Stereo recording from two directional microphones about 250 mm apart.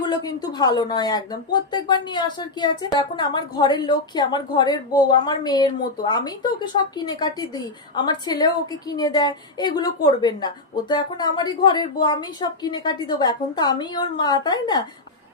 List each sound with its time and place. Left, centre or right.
0.0 s speech: centre